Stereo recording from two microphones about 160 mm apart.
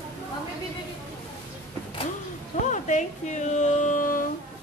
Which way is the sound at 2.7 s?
50° left (ahead or behind).